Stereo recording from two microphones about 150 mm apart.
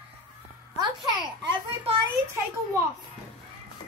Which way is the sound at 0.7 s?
30° right (ahead or behind).